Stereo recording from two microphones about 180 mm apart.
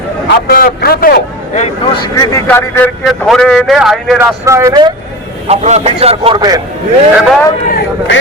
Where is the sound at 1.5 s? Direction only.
40° left (ahead or behind).